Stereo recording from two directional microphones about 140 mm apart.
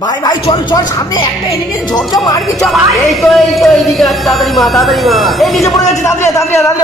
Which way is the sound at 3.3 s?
Centre (ahead or behind).